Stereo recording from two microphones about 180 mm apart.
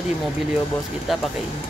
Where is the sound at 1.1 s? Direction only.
Centre (ahead or behind).